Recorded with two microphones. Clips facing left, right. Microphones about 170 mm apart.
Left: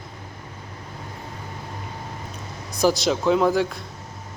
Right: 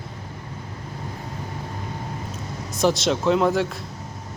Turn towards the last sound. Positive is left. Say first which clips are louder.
# left 1 dB
turn(degrees=0)  # may be behind; listen again after turning